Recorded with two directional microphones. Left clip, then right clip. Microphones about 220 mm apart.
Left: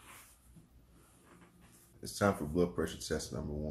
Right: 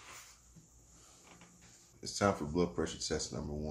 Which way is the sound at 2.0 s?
5° right (ahead or behind).